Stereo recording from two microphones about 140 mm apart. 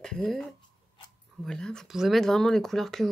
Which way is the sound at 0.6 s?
35° left (ahead or behind).